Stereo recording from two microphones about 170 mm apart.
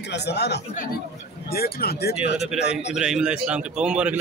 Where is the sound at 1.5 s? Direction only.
65° left (ahead or behind).